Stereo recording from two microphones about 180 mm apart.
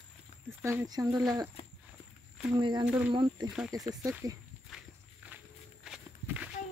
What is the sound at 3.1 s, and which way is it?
Speech, 25° right (ahead or behind).